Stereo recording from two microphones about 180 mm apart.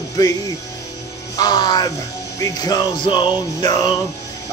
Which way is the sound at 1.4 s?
25° left (ahead or behind).